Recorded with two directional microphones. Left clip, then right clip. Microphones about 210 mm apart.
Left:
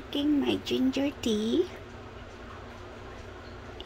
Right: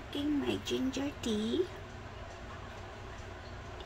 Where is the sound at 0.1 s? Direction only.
10° left (ahead or behind).